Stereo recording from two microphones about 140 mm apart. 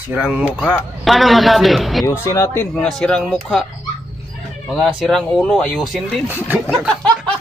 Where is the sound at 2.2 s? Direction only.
20° left (ahead or behind).